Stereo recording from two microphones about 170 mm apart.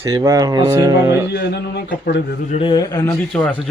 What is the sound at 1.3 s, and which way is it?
Speech, 80° left.